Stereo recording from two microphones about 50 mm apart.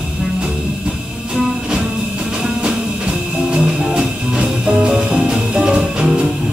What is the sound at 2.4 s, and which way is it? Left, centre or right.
Music, centre.